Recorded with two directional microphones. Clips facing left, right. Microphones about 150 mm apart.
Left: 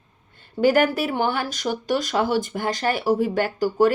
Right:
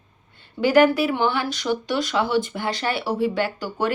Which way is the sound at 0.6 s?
45° left (ahead or behind).